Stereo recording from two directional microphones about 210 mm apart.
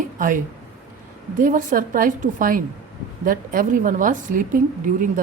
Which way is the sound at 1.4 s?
40° right (ahead or behind).